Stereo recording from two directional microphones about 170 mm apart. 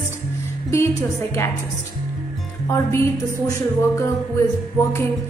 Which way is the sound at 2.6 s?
15° left (ahead or behind).